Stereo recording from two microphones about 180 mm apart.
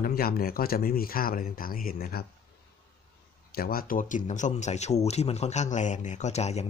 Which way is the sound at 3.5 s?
55° left (ahead or behind).